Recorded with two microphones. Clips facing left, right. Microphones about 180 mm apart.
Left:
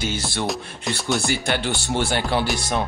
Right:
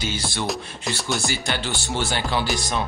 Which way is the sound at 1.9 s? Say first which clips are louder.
Left 2 dB; 55° left (ahead or behind).